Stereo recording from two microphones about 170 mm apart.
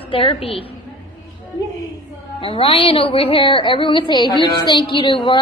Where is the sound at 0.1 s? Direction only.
35° left (ahead or behind).